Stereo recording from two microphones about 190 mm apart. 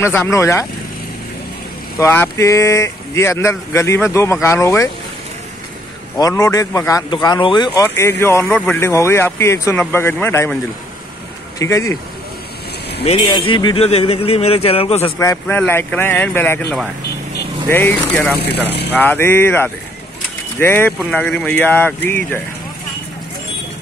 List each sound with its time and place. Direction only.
0.0 s speech: 10° left (ahead or behind)
2.0 s speech: 15° left (ahead or behind)
6.1 s speech: 15° left (ahead or behind)
11.6 s speech: 15° left (ahead or behind)
13.0 s a man's voice: 30° left (ahead or behind)
15.1 s speech: 15° left (ahead or behind)